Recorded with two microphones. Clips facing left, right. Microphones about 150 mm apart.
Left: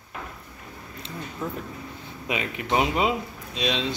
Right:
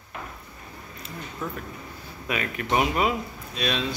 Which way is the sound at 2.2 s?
20° left (ahead or behind).